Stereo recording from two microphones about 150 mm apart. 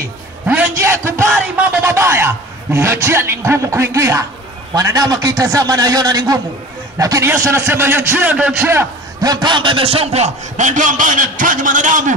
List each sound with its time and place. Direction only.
0.7 s a man's voice: 20° right (ahead or behind); by 12.1 s 60° right (ahead or behind)